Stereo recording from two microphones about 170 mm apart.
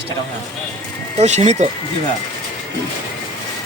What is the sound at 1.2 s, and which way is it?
Speech, 45° right (ahead or behind).